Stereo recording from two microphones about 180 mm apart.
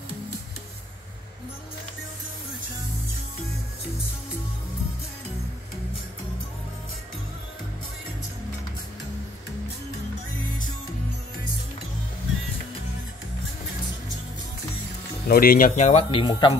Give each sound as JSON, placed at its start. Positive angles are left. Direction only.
{"t": 15.2, "sound": "speech", "side_deg": 55}
{"t": 16.1, "sound": "speech", "side_deg": 25}